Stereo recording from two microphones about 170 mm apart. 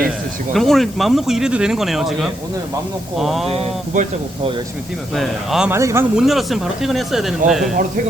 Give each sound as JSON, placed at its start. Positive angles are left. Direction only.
{"t": 0.5, "sound": "speech", "side_deg": 0}
{"t": 3.5, "sound": "speech", "side_deg": -35}
{"t": 5.1, "sound": "speech", "side_deg": 0}
{"t": 5.7, "sound": "speech", "side_deg": -15}
{"t": 6.1, "sound": "speech", "side_deg": 0}